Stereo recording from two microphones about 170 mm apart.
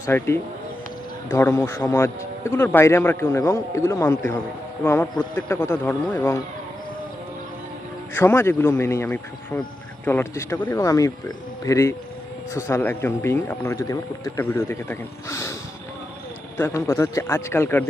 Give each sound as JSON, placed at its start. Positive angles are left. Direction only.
{"t": 0.0, "sound": "speech", "side_deg": 15}
{"t": 8.1, "sound": "speech", "side_deg": 15}
{"t": 16.6, "sound": "speech", "side_deg": 15}